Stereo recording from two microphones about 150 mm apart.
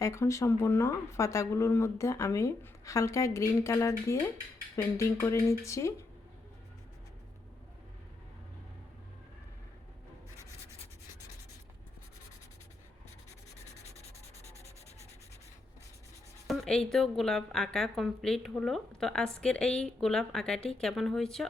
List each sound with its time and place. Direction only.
0.0 s speech: 20° left (ahead or behind)
16.5 s a woman's voice: 5° left (ahead or behind)